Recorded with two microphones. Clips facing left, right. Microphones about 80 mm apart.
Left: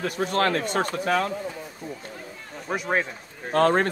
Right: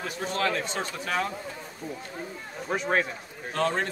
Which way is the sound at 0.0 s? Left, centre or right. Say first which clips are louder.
Left 5 dB; left.